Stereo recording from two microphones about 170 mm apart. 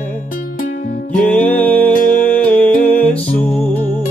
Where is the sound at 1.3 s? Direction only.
10° left (ahead or behind).